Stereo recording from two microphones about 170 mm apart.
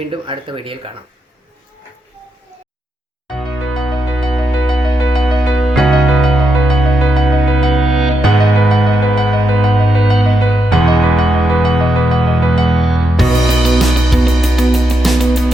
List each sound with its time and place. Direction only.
0.1 s speech: 30° right (ahead or behind)
3.3 s music: centre (ahead or behind)